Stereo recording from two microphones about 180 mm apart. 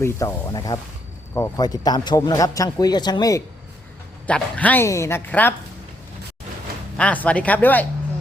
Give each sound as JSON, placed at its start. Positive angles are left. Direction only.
{"t": 0.0, "sound": "a man's voice", "side_deg": 15}
{"t": 4.3, "sound": "a woman's voice", "side_deg": 5}
{"t": 6.9, "sound": "a woman's voice", "side_deg": 5}